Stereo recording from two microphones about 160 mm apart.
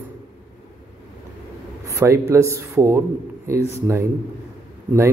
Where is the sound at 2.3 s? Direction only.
15° right (ahead or behind).